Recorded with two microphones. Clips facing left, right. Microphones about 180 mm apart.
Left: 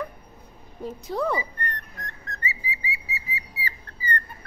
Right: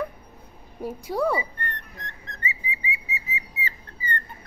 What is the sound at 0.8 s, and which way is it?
Speech, 10° right (ahead or behind).